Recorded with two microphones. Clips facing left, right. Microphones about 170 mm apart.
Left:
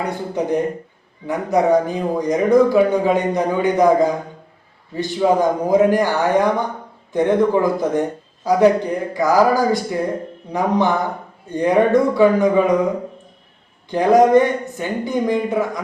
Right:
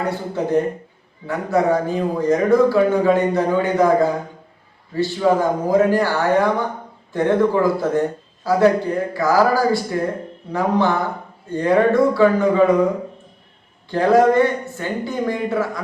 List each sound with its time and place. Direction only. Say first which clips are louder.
0.1 s a man's voice: right 1 dB; 15° left (ahead or behind)
13.9 s a man's voice: left 2 dB; 15° left (ahead or behind)